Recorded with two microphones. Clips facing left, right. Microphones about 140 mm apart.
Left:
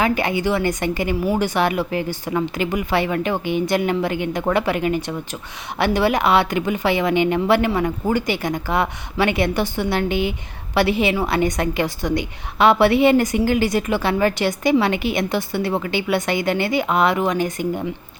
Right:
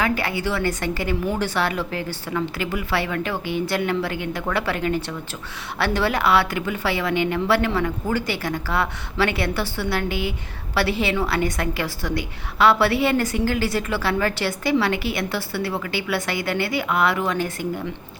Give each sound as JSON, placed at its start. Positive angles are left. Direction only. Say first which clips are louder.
{"t": 0.0, "sound": "a woman's voice", "louder": "left 4 dB", "side_deg": 20}